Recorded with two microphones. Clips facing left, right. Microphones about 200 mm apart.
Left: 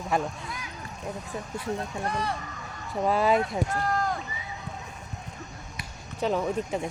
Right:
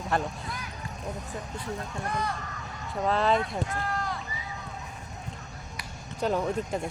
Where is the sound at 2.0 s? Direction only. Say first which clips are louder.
Left 1 dB; 30° left (ahead or behind).